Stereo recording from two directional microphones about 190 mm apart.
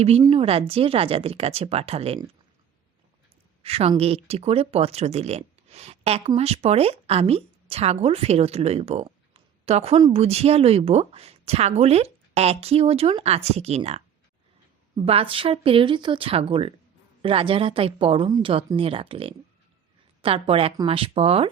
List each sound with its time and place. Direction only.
0.2 s speech: 30° right (ahead or behind)
3.6 s speech: 30° right (ahead or behind)
9.0 s a sound: 30° right (ahead or behind)
10.0 s speech: 30° right (ahead or behind)